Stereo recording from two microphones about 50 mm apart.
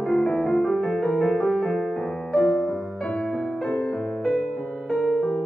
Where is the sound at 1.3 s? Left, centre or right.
Centre.